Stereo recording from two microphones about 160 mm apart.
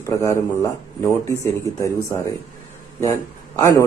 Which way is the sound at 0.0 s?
20° left (ahead or behind).